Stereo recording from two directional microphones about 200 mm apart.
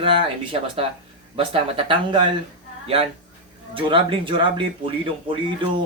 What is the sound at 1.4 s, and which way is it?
A man's voice, 25° right (ahead or behind).